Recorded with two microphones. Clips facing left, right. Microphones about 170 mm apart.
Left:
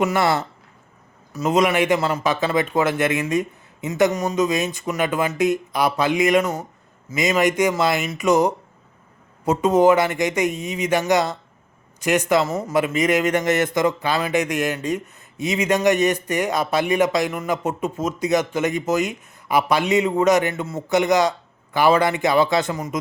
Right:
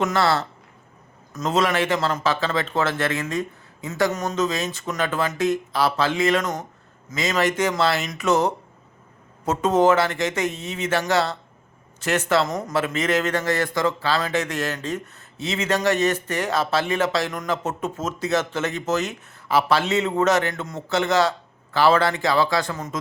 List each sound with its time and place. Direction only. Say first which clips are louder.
0.0 s a man's voice: left 2 dB; 15° left (ahead or behind)